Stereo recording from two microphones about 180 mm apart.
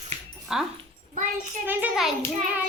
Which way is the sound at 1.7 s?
5° right (ahead or behind).